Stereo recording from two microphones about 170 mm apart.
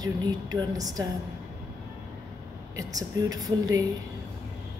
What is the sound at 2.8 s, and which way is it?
A woman's voice, 20° right (ahead or behind).